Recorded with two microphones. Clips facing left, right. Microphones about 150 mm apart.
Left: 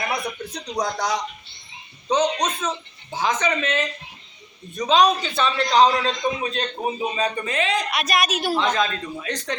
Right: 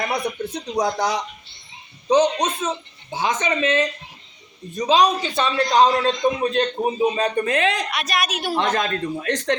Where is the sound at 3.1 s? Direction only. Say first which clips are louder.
Even; 25° right (ahead or behind).